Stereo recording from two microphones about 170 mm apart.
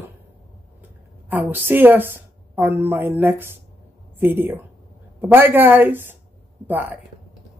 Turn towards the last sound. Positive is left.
turn(degrees=-10)  # may be behind; listen again after turning